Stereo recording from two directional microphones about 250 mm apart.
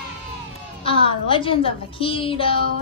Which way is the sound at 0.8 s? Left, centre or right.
Left.